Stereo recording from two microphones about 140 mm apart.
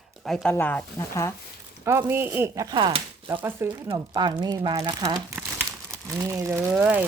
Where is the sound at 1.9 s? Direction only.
15° right (ahead or behind); by 3.0 s 35° right (ahead or behind).